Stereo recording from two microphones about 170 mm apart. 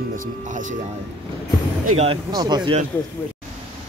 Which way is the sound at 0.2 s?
50° right (ahead or behind).